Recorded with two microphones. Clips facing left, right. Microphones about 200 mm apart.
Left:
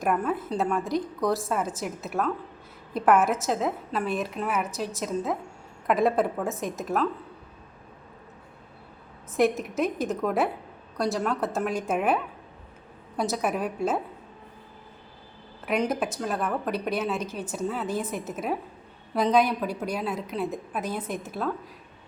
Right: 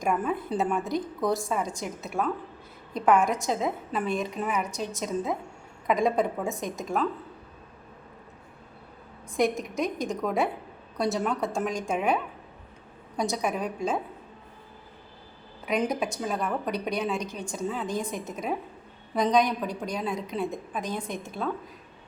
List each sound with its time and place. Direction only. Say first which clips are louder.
0.0 s a woman's voice: left 1 dB; 5° left (ahead or behind)
9.3 s a woman's voice: left 2 dB; centre (ahead or behind)
15.6 s a woman's voice: left 1 dB; centre (ahead or behind)